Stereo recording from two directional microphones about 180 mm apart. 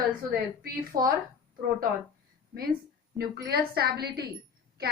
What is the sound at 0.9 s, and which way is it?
Speech, 25° right (ahead or behind).